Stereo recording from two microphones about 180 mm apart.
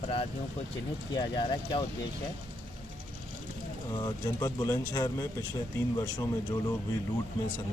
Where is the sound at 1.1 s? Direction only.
25° left (ahead or behind).